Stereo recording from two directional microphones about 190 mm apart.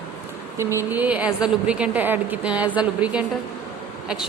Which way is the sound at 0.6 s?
15° right (ahead or behind).